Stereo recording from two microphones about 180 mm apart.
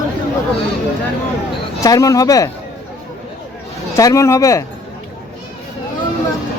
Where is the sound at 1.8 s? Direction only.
20° left (ahead or behind).